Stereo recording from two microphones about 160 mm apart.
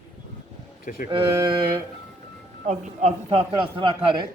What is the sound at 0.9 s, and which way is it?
Speech, 55° left (ahead or behind).